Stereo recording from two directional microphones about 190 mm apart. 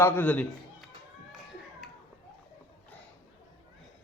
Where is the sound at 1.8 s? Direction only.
Centre (ahead or behind).